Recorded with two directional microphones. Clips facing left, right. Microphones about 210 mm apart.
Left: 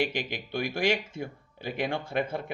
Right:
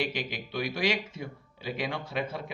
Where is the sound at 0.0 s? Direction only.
50° left (ahead or behind).